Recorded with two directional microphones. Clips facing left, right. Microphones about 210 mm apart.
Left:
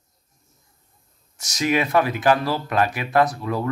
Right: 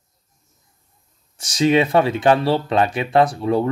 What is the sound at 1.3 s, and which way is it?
Speech, 30° right (ahead or behind).